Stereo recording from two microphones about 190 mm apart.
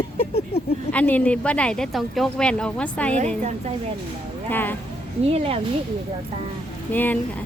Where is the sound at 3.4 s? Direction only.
35° right (ahead or behind).